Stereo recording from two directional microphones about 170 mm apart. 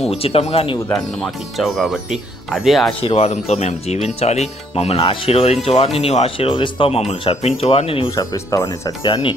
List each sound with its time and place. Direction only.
0.1 s speech: 35° left (ahead or behind)
1.2 s speech: centre (ahead or behind)
3.0 s speech: 35° left (ahead or behind)
8.1 s speech: 20° left (ahead or behind)